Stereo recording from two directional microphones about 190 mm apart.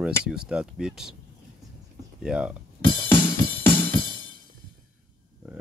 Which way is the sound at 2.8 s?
25° left (ahead or behind).